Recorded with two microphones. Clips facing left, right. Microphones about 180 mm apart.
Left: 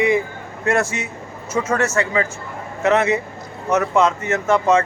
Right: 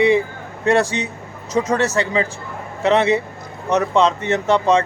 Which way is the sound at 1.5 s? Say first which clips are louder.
Right 1 dB; 20° right (ahead or behind).